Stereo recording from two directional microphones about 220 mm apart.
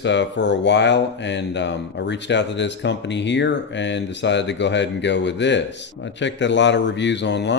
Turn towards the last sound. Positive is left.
turn(degrees=50)  # may be behind; listen again after turning